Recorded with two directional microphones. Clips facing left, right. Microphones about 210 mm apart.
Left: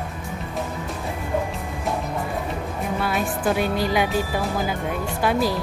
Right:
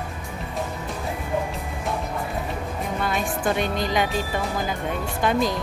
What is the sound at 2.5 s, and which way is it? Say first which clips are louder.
Speech: left 2 dB; 5° left (ahead or behind).